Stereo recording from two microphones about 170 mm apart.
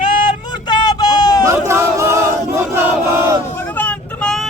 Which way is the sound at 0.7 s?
25° left (ahead or behind).